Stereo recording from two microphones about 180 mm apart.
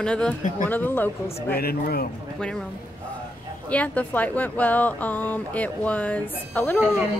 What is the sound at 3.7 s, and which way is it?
A woman's voice, 10° left (ahead or behind).